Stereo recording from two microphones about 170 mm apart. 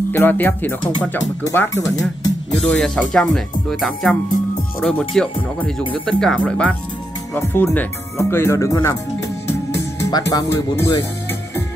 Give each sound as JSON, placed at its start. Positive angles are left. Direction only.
{"t": 0.1, "sound": "speech", "side_deg": 10}
{"t": 2.5, "sound": "speech", "side_deg": 5}
{"t": 9.5, "sound": "music", "side_deg": 15}
{"t": 10.3, "sound": "speech", "side_deg": 20}